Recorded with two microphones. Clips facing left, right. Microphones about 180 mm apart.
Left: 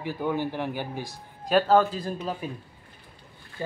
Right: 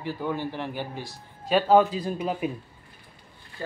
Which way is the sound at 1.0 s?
Centre (ahead or behind).